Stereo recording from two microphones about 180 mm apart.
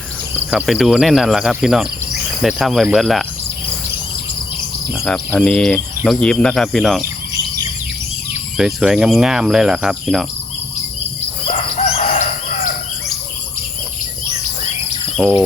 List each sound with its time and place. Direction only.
0.5 s cricket: 5° right (ahead or behind)
4.9 s cricket: 5° left (ahead or behind)
8.5 s cricket: 5° right (ahead or behind)
11.5 s crowing: 35° left (ahead or behind)
15.1 s speech: centre (ahead or behind)